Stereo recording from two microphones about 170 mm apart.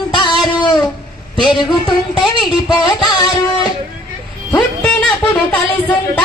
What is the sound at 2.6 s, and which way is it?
Speech, 25° left (ahead or behind).